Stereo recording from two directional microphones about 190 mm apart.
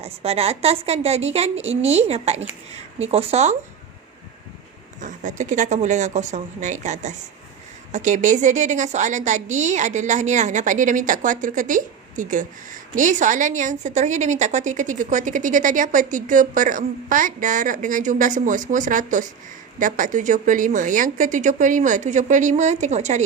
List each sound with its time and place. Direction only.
0.0 s a woman's voice: 30° right (ahead or behind)
4.9 s a woman's voice: 40° right (ahead or behind)